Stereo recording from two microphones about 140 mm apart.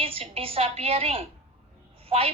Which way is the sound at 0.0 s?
40° right (ahead or behind).